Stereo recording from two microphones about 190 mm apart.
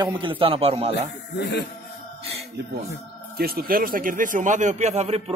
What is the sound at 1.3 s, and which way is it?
Speech, 60° left (ahead or behind).